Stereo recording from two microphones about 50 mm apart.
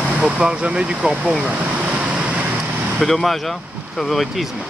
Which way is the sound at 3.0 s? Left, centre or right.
Centre.